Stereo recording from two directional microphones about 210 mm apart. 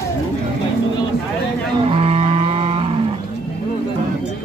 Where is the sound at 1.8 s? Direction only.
25° right (ahead or behind).